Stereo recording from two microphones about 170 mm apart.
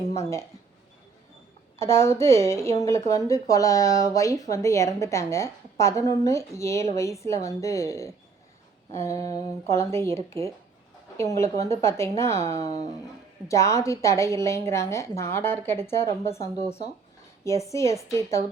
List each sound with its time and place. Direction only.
0.1 s speech: 15° left (ahead or behind)
1.8 s a woman's voice: 15° left (ahead or behind)